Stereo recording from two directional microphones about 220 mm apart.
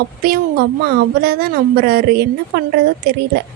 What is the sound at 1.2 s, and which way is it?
A woman's voice, 45° right (ahead or behind).